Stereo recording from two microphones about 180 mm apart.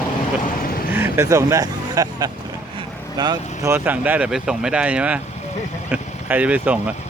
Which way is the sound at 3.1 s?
20° right (ahead or behind).